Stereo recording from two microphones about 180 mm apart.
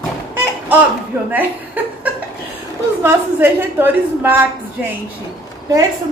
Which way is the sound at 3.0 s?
10° right (ahead or behind).